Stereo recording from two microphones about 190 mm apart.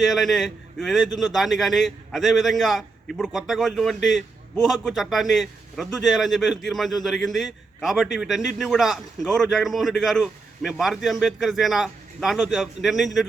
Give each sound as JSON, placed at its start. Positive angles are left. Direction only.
{"t": 0.0, "sound": "a man's voice", "side_deg": 0}